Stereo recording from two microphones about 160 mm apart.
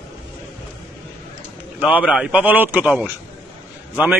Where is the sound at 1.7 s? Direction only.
10° right (ahead or behind).